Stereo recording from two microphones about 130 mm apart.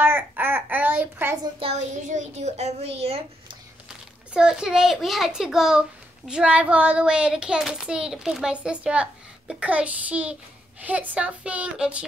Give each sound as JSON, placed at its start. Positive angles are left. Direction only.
{"t": 0.0, "sound": "babbling", "side_deg": -15}
{"t": 1.6, "sound": "a child's voice", "side_deg": -60}
{"t": 4.3, "sound": "a child's voice", "side_deg": -5}